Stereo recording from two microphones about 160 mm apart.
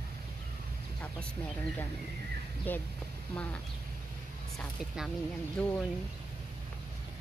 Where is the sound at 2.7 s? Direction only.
10° left (ahead or behind).